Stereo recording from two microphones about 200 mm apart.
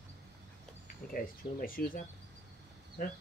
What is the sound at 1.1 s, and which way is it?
Speech, 45° left (ahead or behind).